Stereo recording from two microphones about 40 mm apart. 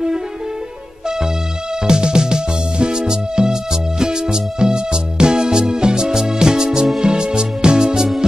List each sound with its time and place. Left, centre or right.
1.9 s music: right